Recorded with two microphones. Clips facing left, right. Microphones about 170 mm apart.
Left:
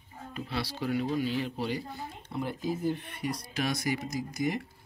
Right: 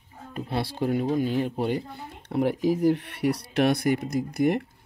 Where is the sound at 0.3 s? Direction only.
50° right (ahead or behind).